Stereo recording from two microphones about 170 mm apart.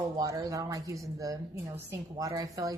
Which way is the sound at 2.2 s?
20° right (ahead or behind).